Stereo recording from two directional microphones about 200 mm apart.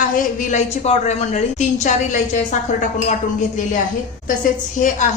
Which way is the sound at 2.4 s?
40° left (ahead or behind).